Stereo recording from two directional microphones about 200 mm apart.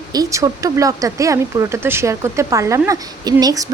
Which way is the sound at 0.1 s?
15° right (ahead or behind).